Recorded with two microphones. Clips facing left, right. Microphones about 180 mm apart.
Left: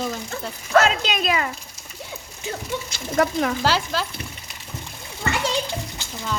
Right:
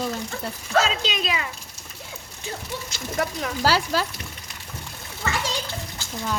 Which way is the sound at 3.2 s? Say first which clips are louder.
Left 7 dB; 60° left (ahead or behind).